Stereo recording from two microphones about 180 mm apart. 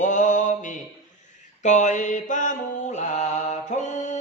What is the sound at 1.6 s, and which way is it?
Mantra, 40° left (ahead or behind).